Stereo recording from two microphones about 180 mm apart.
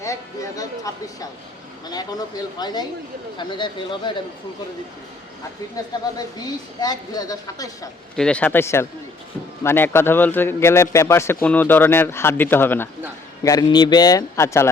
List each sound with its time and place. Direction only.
0.0 s speech: 20° left (ahead or behind)
5.7 s speech: 20° left (ahead or behind)
8.1 s a man's voice: 5° left (ahead or behind)